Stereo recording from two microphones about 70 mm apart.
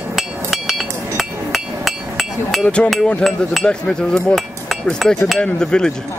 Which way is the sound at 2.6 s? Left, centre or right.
Centre.